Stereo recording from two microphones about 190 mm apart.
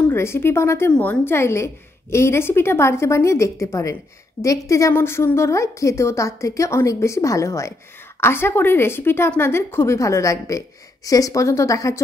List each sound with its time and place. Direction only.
0.0 s a woman's voice: 15° left (ahead or behind)